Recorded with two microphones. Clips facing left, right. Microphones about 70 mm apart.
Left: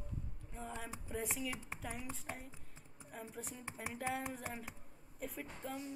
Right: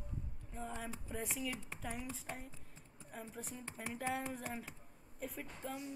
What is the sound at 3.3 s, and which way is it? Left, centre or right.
Speech, centre.